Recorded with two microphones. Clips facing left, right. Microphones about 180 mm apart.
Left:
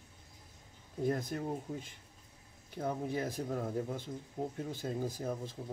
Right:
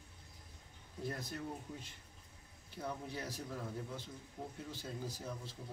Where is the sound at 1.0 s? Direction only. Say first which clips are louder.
Left 8 dB; 50° left (ahead or behind).